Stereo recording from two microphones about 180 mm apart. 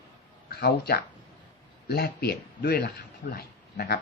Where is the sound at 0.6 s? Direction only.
65° left (ahead or behind).